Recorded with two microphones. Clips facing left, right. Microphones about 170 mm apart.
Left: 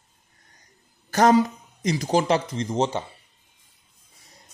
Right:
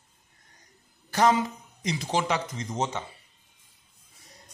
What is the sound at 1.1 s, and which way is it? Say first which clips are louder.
A man's voice: left 5 dB; 45° left (ahead or behind).